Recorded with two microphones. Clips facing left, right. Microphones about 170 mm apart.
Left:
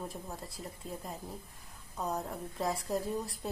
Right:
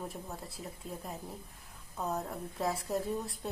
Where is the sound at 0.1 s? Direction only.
Centre (ahead or behind).